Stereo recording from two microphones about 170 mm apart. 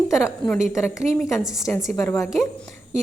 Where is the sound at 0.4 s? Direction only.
5° left (ahead or behind).